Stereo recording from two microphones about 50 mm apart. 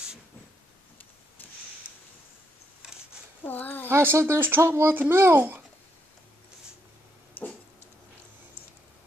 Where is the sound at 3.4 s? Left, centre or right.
Left.